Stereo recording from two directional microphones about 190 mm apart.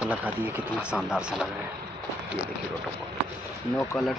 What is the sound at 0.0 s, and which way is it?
Speech, 10° right (ahead or behind).